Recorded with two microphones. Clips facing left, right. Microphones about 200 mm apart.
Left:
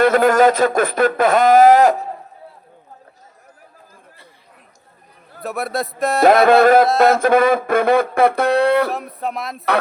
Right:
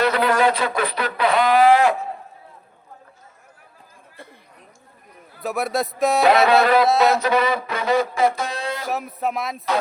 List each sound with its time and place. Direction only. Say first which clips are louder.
0.0 s speech: left 6 dB; 45° left (ahead or behind)
5.4 s speech: even; centre (ahead or behind)
6.2 s speech: left 6 dB; 50° left (ahead or behind)
8.9 s speech: even; centre (ahead or behind)